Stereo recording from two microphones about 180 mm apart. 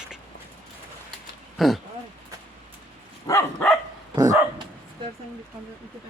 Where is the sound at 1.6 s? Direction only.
Centre (ahead or behind).